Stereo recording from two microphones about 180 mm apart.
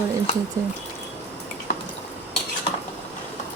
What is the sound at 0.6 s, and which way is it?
Speech, 20° right (ahead or behind).